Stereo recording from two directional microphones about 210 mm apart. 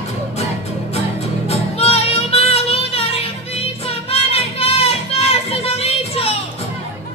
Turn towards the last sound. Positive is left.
turn(degrees=30)  # may be behind; listen again after turning